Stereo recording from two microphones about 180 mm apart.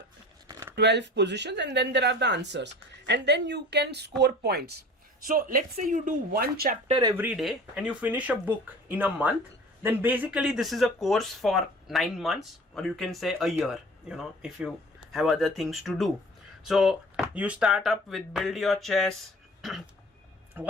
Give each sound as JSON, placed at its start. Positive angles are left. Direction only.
{"t": 0.4, "sound": "a sound", "side_deg": -15}
{"t": 0.8, "sound": "speech", "side_deg": -75}
{"t": 5.2, "sound": "speech", "side_deg": -50}
{"t": 7.3, "sound": "speech", "side_deg": -5}
{"t": 20.6, "sound": "a man's voice", "side_deg": -10}